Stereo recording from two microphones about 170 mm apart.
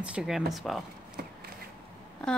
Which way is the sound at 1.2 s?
65° right (ahead or behind).